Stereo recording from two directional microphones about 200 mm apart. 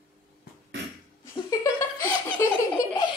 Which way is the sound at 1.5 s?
15° left (ahead or behind).